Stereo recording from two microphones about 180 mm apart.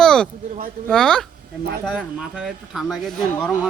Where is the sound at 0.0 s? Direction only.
5° left (ahead or behind).